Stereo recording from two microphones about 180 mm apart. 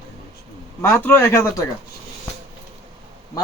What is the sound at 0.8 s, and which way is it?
Speech, 15° left (ahead or behind).